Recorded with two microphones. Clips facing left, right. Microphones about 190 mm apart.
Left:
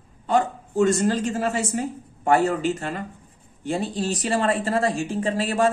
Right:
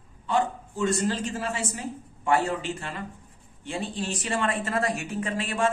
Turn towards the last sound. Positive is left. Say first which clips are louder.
# left 5 dB
turn(degrees=35)  # may be behind; listen again after turning